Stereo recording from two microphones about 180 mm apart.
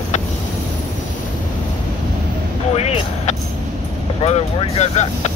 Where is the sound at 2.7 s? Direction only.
35° left (ahead or behind).